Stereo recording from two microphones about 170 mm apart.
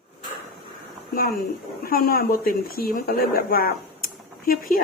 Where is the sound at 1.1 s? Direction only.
60° left (ahead or behind).